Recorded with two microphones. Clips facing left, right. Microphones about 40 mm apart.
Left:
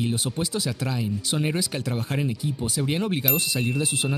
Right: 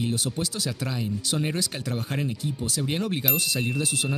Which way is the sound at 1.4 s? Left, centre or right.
Centre.